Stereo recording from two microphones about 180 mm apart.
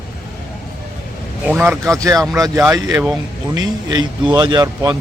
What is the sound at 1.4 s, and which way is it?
Speech, 10° right (ahead or behind).